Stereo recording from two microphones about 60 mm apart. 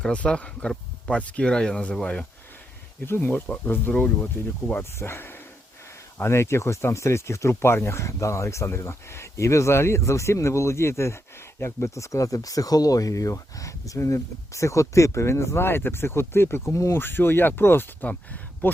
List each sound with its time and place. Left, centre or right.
0.0 s speech: centre
3.1 s speech: left
4.0 s speech: left
4.8 s speech: left
17.0 s speech: left
18.0 s speech: left